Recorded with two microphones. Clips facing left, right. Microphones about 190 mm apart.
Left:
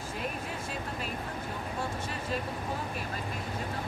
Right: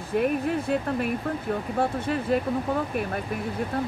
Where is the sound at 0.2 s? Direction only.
60° right (ahead or behind).